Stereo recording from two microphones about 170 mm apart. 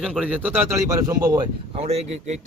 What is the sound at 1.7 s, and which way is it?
Speech, 35° right (ahead or behind).